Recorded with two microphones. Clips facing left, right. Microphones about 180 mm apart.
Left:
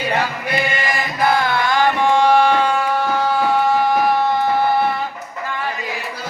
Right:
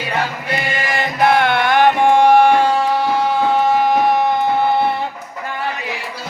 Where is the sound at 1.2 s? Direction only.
70° right (ahead or behind); by 2.7 s 50° right (ahead or behind).